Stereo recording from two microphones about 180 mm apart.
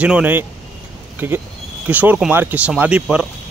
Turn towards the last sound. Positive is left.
turn(degrees=-5)  # may be behind; listen again after turning